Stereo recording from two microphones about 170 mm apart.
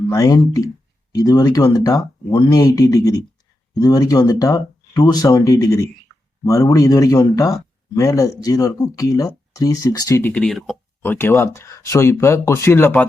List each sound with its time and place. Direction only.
0.1 s speech: 20° left (ahead or behind)